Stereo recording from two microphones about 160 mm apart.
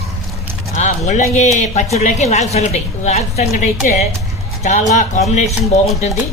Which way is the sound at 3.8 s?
50° left (ahead or behind).